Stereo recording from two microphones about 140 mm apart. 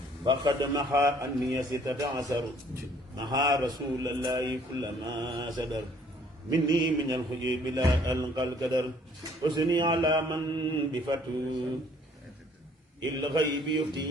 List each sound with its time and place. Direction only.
0.3 s mantra: 30° right (ahead or behind)
1.5 s a man's voice: 25° right (ahead or behind)
6.5 s mantra: 30° right (ahead or behind)
13.2 s mantra: 35° right (ahead or behind)